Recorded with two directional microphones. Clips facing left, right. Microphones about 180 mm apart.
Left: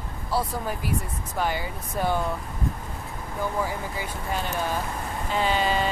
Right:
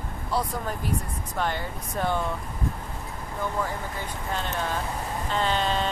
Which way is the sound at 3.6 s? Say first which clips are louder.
Left 1 dB; 10° left (ahead or behind).